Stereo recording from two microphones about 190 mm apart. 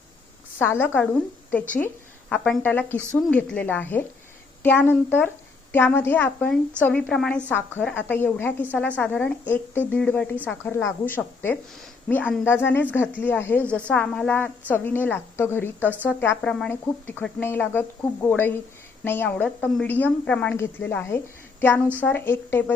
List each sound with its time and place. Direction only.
0.6 s a woman's voice: 10° left (ahead or behind)
2.3 s a woman's voice: 5° left (ahead or behind)